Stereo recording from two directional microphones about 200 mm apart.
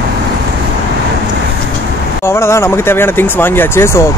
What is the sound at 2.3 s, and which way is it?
Speech, 15° left (ahead or behind).